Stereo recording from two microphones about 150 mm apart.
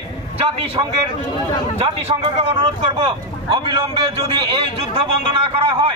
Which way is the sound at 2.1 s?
45° right (ahead or behind).